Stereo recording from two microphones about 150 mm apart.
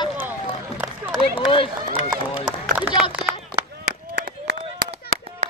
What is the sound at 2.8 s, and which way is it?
Speech, 10° right (ahead or behind).